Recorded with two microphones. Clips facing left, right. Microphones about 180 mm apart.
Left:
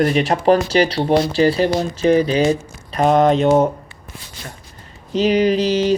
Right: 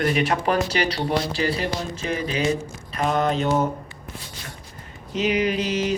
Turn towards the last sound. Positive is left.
turn(degrees=30)  # may be behind; listen again after turning